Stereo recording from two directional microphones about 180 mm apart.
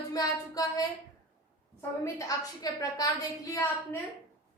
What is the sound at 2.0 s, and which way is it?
A woman's voice, 20° left (ahead or behind).